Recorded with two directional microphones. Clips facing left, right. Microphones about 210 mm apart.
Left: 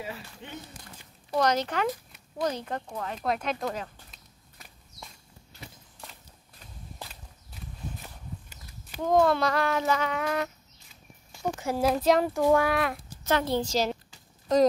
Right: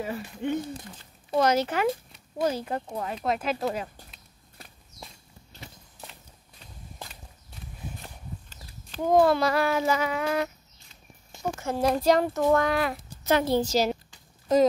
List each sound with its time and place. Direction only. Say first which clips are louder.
0.0 s speech: right 9 dB; 50° right (ahead or behind)
1.4 s child singing: right 3 dB; 5° right (ahead or behind)
3.2 s speech: right 2 dB; 5° right (ahead or behind)
8.0 s horse: right 1 dB; 10° left (ahead or behind)
9.2 s child singing: right 2 dB; 5° right (ahead or behind)
11.6 s speech: right 1 dB; 5° left (ahead or behind)